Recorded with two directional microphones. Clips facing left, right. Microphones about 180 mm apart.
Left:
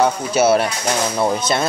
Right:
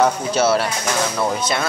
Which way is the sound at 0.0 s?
10° left (ahead or behind).